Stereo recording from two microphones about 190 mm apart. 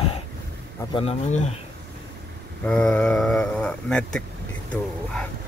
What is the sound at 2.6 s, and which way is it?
Speech, 5° left (ahead or behind).